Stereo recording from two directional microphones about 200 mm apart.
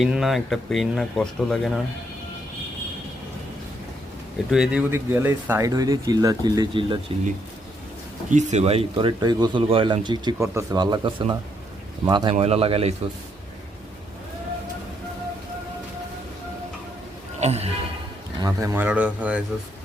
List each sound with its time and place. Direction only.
0.0 s speech: centre (ahead or behind)
4.4 s speech: 5° right (ahead or behind); by 7.0 s 25° right (ahead or behind)
8.3 s speech: 35° right (ahead or behind)
17.4 s speech: 30° right (ahead or behind)
18.4 s speech: 15° right (ahead or behind)